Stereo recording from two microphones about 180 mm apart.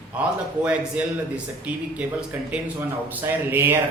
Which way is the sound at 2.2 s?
10° right (ahead or behind).